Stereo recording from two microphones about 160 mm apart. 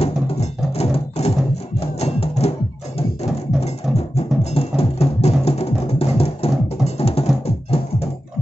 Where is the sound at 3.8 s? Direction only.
5° right (ahead or behind).